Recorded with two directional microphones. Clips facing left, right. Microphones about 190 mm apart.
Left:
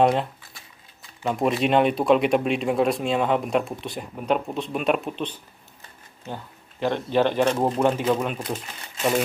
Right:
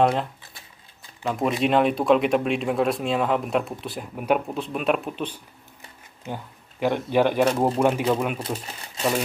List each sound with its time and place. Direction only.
0.0 s speech: centre (ahead or behind)
8.4 s speech: 30° right (ahead or behind)